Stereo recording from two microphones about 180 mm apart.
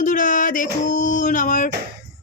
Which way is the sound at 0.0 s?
45° left (ahead or behind).